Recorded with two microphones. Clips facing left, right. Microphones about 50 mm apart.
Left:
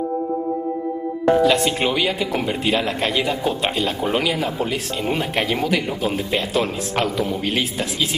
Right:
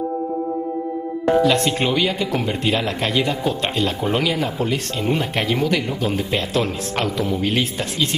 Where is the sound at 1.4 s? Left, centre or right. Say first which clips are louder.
Even; centre.